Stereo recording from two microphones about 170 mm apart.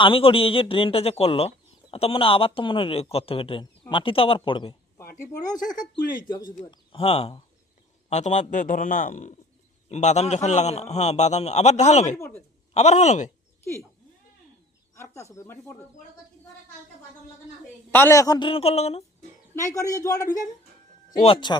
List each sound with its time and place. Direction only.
0.0 s speech: 30° left (ahead or behind)
5.8 s a man's voice: 25° left (ahead or behind)
8.1 s a man's voice: 45° left (ahead or behind)
14.9 s speech: 15° left (ahead or behind)
17.9 s a man's voice: 15° left (ahead or behind); by 19.0 s 35° left (ahead or behind)
19.5 s a man's voice: 20° left (ahead or behind)
21.2 s speech: 35° left (ahead or behind)